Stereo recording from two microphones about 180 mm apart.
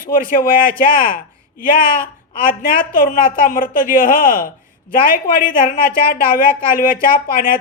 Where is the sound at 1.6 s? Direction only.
50° left (ahead or behind).